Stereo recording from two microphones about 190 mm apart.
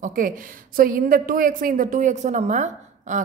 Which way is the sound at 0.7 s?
50° right (ahead or behind).